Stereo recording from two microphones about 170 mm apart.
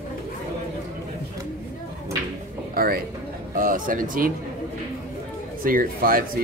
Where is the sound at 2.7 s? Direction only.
60° right (ahead or behind).